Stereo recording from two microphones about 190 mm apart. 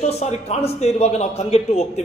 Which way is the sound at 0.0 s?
35° left (ahead or behind).